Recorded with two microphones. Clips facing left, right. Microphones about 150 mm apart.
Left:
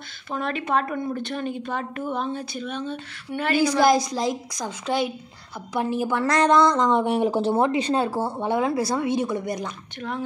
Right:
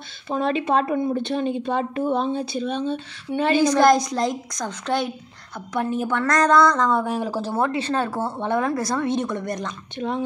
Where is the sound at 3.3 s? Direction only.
20° right (ahead or behind).